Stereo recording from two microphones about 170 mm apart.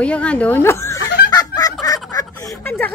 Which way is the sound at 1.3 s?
20° left (ahead or behind).